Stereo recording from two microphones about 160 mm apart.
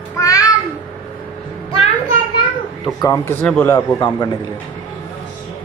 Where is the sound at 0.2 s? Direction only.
20° left (ahead or behind).